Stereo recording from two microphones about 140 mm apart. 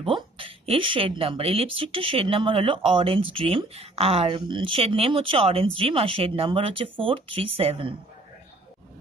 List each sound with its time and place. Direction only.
0.0 s speech: 40° right (ahead or behind)